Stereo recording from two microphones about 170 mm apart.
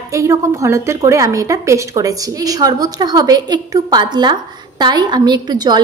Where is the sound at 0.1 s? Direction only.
20° right (ahead or behind).